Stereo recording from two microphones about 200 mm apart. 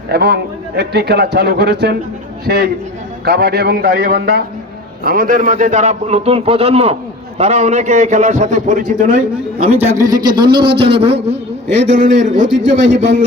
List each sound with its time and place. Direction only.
0.1 s a man's voice: 55° right (ahead or behind)
9.7 s a man's voice: 10° right (ahead or behind); by 11.3 s 30° right (ahead or behind)
11.7 s a man's voice: 65° right (ahead or behind)
11.9 s a man's voice: 40° right (ahead or behind)
12.5 s a man's voice: 65° right (ahead or behind)